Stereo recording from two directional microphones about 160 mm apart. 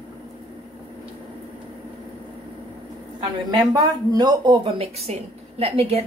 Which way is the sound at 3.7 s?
25° right (ahead or behind).